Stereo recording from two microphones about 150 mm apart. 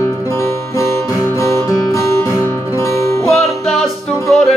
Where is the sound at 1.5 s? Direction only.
20° left (ahead or behind).